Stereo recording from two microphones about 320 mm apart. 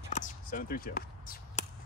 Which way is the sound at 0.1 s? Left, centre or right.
Left.